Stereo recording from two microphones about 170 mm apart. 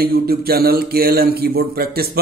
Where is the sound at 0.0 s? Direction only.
65° right (ahead or behind).